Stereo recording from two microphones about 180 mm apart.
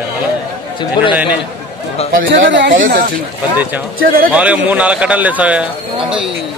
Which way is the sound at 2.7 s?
50° right (ahead or behind).